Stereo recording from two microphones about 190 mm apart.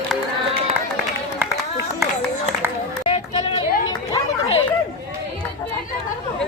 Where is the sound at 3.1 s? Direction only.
30° left (ahead or behind).